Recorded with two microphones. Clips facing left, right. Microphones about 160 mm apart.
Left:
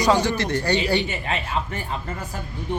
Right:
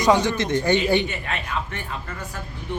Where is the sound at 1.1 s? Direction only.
30° left (ahead or behind).